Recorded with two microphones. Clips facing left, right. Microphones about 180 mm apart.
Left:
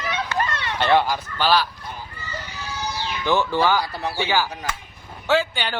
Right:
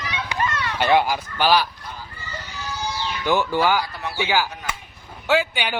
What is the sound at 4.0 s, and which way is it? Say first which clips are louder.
Speech: left 1 dB; 35° left (ahead or behind).